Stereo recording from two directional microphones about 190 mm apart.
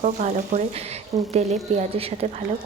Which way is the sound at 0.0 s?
40° right (ahead or behind).